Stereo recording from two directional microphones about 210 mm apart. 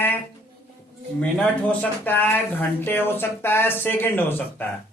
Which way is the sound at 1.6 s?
10° left (ahead or behind).